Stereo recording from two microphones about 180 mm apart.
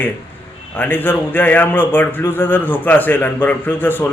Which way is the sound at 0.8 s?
10° left (ahead or behind).